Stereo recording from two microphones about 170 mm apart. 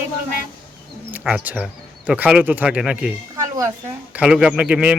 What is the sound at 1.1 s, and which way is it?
Speech, 5° right (ahead or behind).